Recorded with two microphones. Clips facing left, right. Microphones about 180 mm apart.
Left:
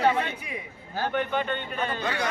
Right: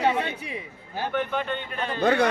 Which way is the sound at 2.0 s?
55° right (ahead or behind).